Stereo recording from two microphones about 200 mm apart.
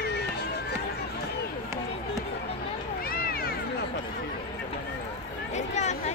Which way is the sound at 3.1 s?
50° left (ahead or behind).